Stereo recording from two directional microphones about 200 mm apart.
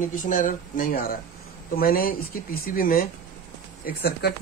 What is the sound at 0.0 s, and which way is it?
Speech, 40° left (ahead or behind).